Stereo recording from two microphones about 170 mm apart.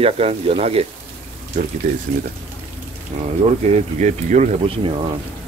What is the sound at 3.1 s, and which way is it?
Speech, 35° right (ahead or behind).